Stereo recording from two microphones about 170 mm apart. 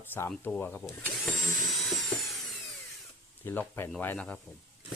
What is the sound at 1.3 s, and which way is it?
Dental drill, centre (ahead or behind).